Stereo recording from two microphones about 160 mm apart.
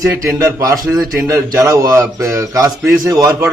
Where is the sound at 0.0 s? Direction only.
20° right (ahead or behind).